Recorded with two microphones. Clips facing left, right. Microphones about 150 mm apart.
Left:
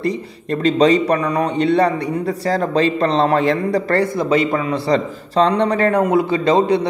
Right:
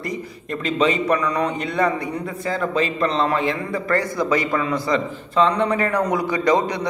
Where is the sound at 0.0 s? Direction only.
35° left (ahead or behind).